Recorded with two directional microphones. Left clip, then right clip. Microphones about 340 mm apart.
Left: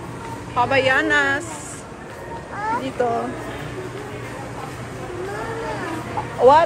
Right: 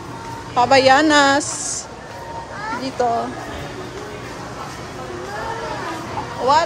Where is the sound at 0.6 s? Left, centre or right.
Centre.